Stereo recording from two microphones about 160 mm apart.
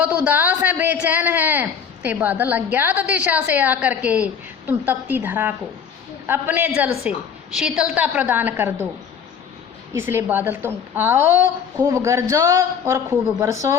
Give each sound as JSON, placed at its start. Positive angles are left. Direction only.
{"t": 0.0, "sound": "speech", "side_deg": -10}
{"t": 9.9, "sound": "speech", "side_deg": -15}